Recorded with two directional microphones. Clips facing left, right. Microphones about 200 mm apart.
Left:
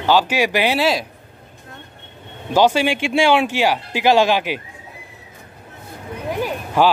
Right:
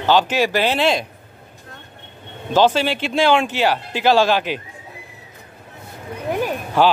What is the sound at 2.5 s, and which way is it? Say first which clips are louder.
Speech: left 1 dB; 10° left (ahead or behind).